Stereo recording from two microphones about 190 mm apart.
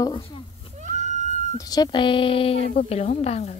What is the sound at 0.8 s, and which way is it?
Screaming, 40° right (ahead or behind).